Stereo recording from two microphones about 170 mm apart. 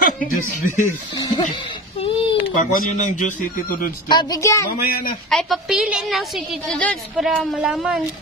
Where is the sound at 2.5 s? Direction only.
50° left (ahead or behind).